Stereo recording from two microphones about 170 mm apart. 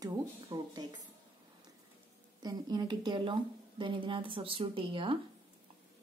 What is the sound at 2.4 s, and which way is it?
A woman's voice, 25° right (ahead or behind).